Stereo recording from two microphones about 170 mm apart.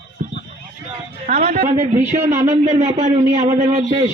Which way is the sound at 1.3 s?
40° right (ahead or behind).